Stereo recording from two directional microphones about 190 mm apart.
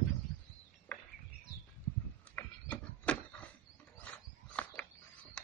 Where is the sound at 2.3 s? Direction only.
10° left (ahead or behind).